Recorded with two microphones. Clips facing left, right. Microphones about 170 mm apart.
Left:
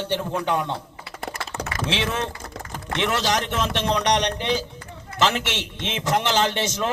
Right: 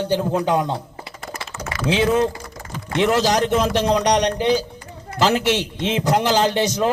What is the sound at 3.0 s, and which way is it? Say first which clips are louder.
Speech: right 6 dB; 40° right (ahead or behind).